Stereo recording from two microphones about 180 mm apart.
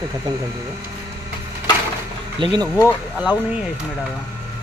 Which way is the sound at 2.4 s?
25° right (ahead or behind).